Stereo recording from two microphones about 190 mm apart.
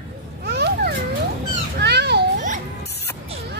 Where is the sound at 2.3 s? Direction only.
40° right (ahead or behind).